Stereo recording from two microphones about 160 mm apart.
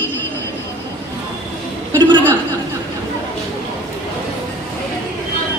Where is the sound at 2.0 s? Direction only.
30° right (ahead or behind).